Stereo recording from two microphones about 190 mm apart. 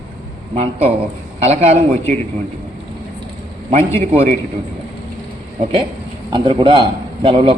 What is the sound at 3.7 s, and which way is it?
Speech, 35° right (ahead or behind).